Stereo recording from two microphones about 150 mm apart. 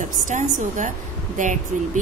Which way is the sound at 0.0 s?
55° right (ahead or behind).